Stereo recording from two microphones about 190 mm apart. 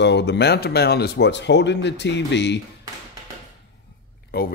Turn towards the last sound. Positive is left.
turn(degrees=50)  # may be behind; listen again after turning